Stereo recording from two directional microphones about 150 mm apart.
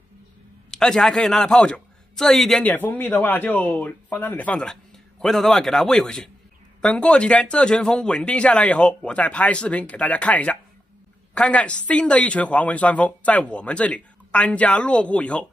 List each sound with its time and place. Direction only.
0.7 s a man's voice: 5° left (ahead or behind)